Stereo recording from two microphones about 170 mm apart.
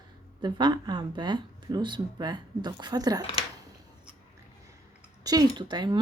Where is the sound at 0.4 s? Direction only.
25° right (ahead or behind).